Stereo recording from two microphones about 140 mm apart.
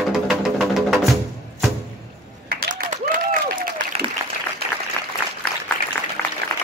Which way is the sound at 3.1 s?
75° right (ahead or behind).